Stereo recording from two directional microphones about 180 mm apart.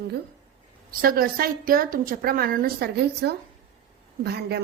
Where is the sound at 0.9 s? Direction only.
55° right (ahead or behind).